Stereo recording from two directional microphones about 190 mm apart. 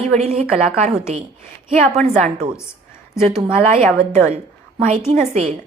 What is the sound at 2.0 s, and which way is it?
Speech, 30° right (ahead or behind).